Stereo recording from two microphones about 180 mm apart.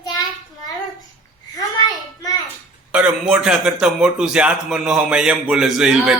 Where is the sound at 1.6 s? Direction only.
20° left (ahead or behind).